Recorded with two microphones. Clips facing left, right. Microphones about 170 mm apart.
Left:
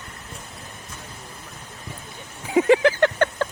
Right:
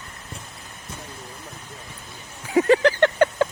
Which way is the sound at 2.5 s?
15° left (ahead or behind).